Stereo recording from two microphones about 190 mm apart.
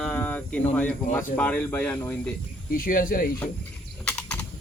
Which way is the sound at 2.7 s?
50° left (ahead or behind).